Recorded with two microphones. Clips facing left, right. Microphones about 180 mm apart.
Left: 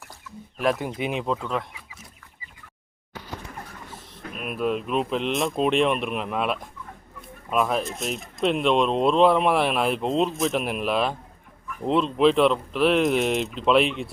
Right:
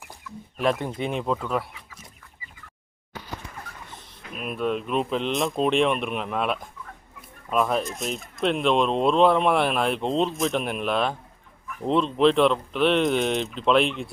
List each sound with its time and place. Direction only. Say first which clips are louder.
0.6 s speech: even; centre (ahead or behind)
4.2 s a sound: left 1 dB; 45° left (ahead or behind)
4.4 s speech: left 1 dB; 5° left (ahead or behind)
7.2 s fowl: even; centre (ahead or behind)
7.9 s speech: left 1 dB; centre (ahead or behind)